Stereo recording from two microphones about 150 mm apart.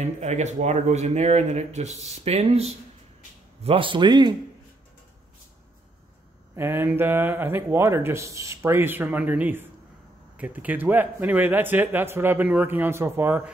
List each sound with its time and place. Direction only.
0.0 s a man's voice: 50° right (ahead or behind); by 4.4 s 30° right (ahead or behind)
6.5 s speech: 15° right (ahead or behind)